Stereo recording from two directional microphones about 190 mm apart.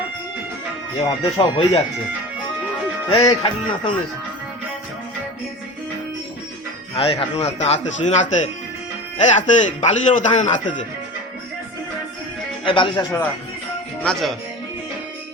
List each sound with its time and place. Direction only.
1.0 s music: 20° left (ahead or behind)
3.1 s music: 25° left (ahead or behind)
6.9 s a man's voice: 30° left (ahead or behind)
12.6 s music: 25° left (ahead or behind)
14.0 s speech: 5° left (ahead or behind)